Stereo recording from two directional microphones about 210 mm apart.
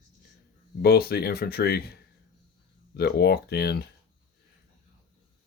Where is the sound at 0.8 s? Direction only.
45° left (ahead or behind).